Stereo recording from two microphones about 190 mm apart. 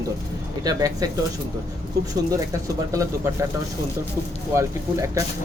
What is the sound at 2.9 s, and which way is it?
Speech, 15° right (ahead or behind).